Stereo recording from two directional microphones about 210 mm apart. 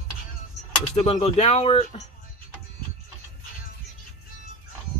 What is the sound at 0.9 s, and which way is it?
Speech, 30° left (ahead or behind).